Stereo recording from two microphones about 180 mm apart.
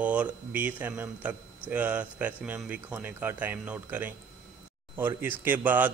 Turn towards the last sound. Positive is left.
turn(degrees=-10)  # may be behind; listen again after turning